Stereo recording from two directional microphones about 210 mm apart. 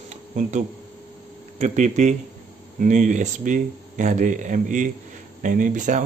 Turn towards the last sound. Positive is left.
turn(degrees=-35)  # may be behind; listen again after turning